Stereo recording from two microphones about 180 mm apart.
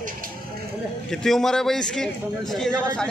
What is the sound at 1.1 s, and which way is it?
Speech, centre (ahead or behind).